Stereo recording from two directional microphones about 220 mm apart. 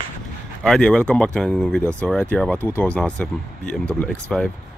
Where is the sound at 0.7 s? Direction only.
5° left (ahead or behind).